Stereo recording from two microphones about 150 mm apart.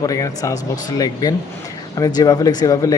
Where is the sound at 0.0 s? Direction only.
20° left (ahead or behind).